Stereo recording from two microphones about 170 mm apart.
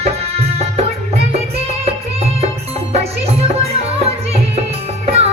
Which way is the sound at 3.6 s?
35° right (ahead or behind).